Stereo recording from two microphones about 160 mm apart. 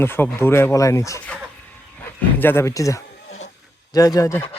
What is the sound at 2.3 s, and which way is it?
Speech, 15° left (ahead or behind).